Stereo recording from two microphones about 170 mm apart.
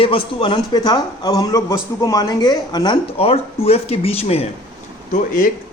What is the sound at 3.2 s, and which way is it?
Speech, 35° left (ahead or behind).